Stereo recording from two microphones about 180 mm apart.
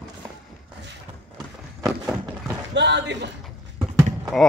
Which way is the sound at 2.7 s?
75° right (ahead or behind).